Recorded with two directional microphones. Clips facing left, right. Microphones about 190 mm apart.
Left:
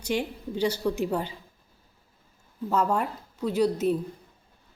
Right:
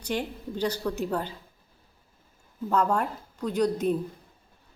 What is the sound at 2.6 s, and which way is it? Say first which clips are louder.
A woman's voice: even; 5° left (ahead or behind).